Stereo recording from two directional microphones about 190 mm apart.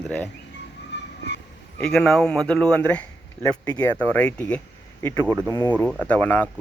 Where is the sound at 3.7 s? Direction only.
20° left (ahead or behind).